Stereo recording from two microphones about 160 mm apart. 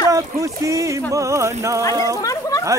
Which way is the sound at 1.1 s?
20° right (ahead or behind).